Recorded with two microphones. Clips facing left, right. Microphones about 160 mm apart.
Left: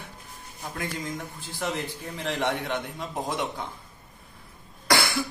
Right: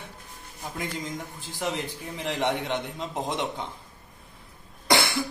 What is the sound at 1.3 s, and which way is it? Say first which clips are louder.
A man's voice: right 1 dB; 15° right (ahead or behind).